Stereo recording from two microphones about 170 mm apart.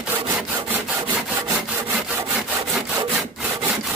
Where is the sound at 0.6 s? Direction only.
10° right (ahead or behind).